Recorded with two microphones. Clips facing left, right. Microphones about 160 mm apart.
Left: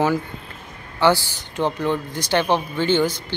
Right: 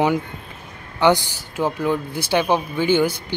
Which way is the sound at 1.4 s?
5° right (ahead or behind).